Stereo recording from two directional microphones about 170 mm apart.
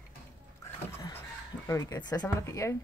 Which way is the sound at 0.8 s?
15° left (ahead or behind).